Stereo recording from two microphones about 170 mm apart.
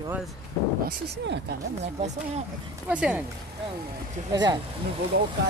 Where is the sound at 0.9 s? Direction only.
65° right (ahead or behind).